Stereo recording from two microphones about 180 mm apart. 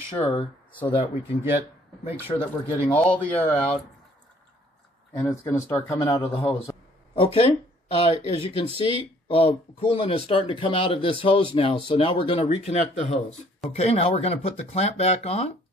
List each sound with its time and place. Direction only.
0.1 s speech: 30° left (ahead or behind)
2.2 s a man's voice: 30° left (ahead or behind)
2.9 s speech: 5° left (ahead or behind)
5.1 s speech: 15° left (ahead or behind)
6.1 s a man's voice: 35° left (ahead or behind)